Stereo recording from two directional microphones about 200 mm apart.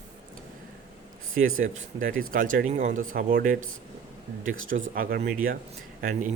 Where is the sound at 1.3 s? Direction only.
45° right (ahead or behind).